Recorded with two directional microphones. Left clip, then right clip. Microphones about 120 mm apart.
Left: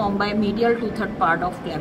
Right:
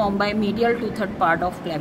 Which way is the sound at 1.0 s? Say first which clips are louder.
Right 3 dB; 90° right.